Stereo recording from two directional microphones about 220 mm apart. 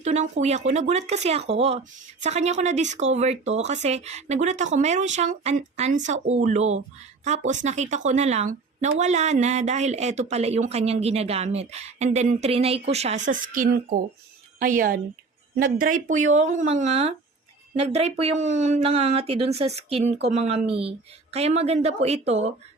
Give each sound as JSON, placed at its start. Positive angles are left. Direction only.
{"t": 0.0, "sound": "a woman's voice", "side_deg": -30}